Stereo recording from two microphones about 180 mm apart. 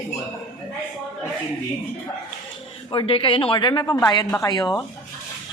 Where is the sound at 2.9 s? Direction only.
30° left (ahead or behind).